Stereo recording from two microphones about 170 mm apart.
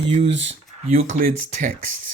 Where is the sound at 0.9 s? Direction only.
50° right (ahead or behind).